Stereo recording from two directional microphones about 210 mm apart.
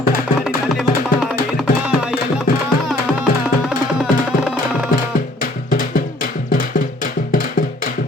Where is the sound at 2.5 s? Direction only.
40° left (ahead or behind).